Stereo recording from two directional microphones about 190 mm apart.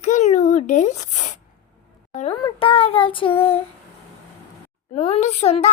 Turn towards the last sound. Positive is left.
turn(degrees=35)  # may be behind; listen again after turning